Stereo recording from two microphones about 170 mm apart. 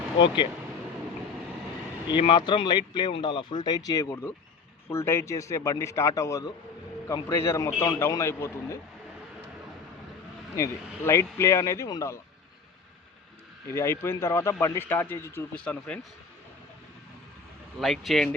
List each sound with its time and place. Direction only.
2.0 s speech: 30° left (ahead or behind)
10.5 s speech: 15° left (ahead or behind)
13.7 s speech: 15° left (ahead or behind)
17.7 s speech: centre (ahead or behind)